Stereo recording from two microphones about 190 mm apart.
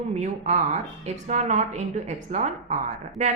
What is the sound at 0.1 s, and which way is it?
A woman's voice, 35° right (ahead or behind).